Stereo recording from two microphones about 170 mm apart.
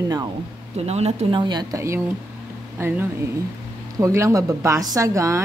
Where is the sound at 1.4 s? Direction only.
20° right (ahead or behind).